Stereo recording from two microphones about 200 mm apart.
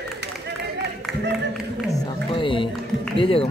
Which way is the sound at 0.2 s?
60° right (ahead or behind).